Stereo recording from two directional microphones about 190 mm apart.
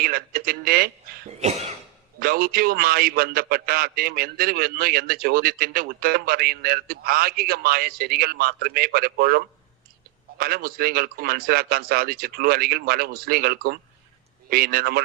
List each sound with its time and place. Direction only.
0.0 s a man's voice: 50° right (ahead or behind)
1.3 s cough: 35° right (ahead or behind)
2.1 s a man's voice: 55° right (ahead or behind)